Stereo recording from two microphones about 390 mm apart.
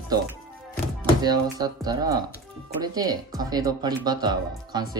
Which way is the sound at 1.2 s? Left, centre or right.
Centre.